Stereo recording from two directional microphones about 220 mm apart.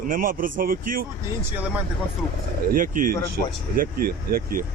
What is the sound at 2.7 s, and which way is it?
A man's voice, 40° right (ahead or behind).